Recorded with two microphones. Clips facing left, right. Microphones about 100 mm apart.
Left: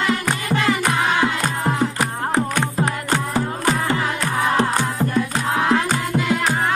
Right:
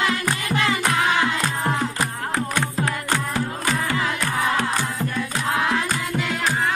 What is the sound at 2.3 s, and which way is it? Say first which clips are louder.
Music: left 4 dB; 15° left (ahead or behind).